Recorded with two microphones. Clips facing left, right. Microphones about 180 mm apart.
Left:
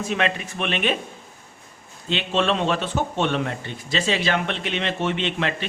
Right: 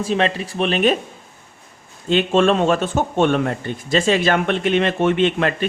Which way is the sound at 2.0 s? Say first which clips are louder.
Right 7 dB; 45° right (ahead or behind).